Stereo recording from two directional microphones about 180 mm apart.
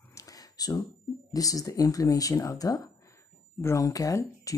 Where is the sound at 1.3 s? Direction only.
20° left (ahead or behind).